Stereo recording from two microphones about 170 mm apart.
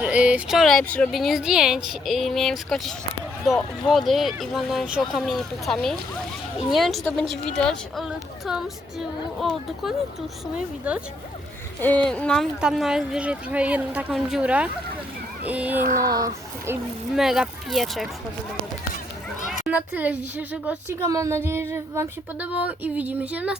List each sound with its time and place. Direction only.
0.0 s a woman's voice: 5° right (ahead or behind)
11.8 s a woman's voice: 10° left (ahead or behind); by 15.8 s 10° right (ahead or behind)
15.8 s a sound: 55° right (ahead or behind)
16.0 s a child's voice: 20° right (ahead or behind)
17.2 s speech: 5° right (ahead or behind)
19.5 s a woman's voice: 10° right (ahead or behind)